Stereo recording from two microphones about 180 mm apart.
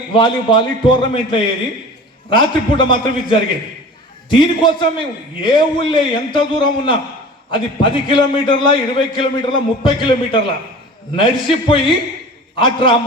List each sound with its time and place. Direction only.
0.1 s a man's voice: 25° left (ahead or behind)